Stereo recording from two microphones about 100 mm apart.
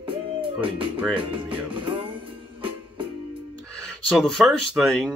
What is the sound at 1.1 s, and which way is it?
Speech, 60° right (ahead or behind).